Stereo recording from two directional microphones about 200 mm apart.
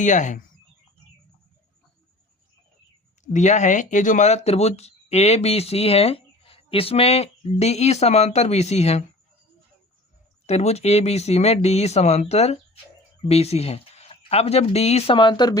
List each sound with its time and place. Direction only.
0.0 s speech: 35° left (ahead or behind)
3.3 s speech: 35° left (ahead or behind)
10.4 s speech: 35° left (ahead or behind)